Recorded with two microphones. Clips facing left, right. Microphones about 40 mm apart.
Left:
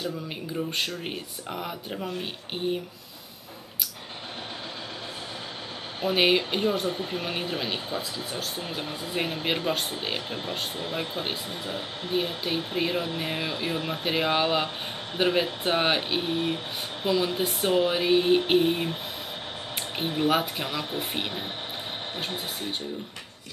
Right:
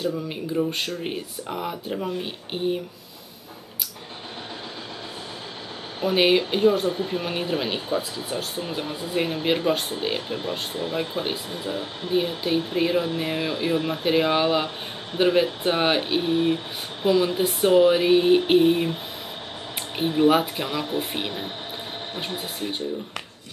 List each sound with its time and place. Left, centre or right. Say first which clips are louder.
0.6 s speech: right 4 dB; centre
5.9 s speech: right 3 dB; centre
8.3 s speech: right 4 dB; right
8.6 s speech: right 4 dB; centre
20.0 s speech: right 6 dB; centre